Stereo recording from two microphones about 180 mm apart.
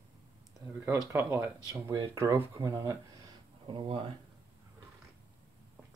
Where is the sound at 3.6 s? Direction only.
30° right (ahead or behind).